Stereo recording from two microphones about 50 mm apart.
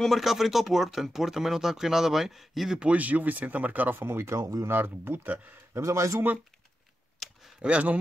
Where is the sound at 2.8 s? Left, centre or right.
Right.